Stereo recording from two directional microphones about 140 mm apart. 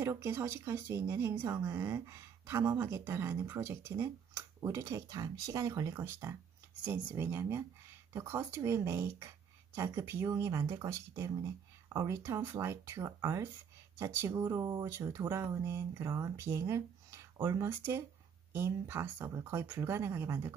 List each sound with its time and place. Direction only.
0.0 s speech: 20° right (ahead or behind)